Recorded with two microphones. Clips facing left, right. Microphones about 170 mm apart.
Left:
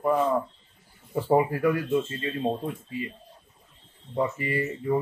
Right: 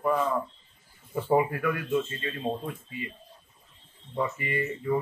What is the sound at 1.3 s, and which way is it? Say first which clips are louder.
Speech: left 3 dB; 30° left (ahead or behind).